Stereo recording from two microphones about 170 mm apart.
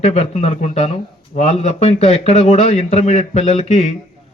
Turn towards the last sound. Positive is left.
turn(degrees=40)  # may be behind; listen again after turning